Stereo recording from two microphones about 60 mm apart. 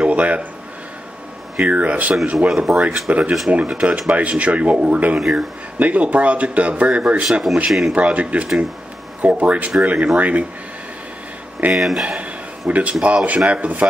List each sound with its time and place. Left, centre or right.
0.0 s a sound: right
1.6 s speech: right
2.5 s speech: centre
3.1 s speech: right
7.5 s speech: centre
7.9 s speech: right
11.7 s speech: centre
12.2 s a sound: right
13.0 s speech: right